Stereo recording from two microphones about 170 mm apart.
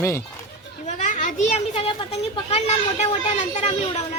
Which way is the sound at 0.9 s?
45° left (ahead or behind).